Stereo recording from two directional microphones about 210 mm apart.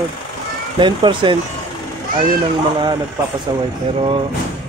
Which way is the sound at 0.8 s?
20° right (ahead or behind).